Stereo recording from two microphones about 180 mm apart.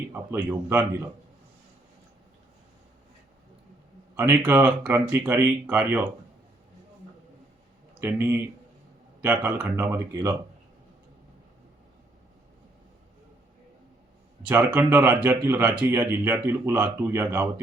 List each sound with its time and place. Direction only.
0.1 s a man's voice: 10° right (ahead or behind)
4.2 s speech: 10° right (ahead or behind)
8.0 s speech: 10° right (ahead or behind)
14.4 s speech: 10° right (ahead or behind)